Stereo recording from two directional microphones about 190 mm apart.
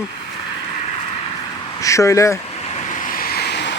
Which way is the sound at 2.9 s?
45° left (ahead or behind).